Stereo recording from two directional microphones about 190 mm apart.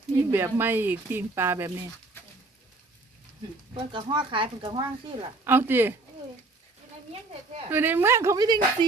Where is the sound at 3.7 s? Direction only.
25° right (ahead or behind).